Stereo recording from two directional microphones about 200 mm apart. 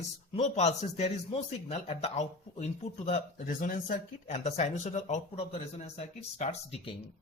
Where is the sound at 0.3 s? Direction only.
35° left (ahead or behind).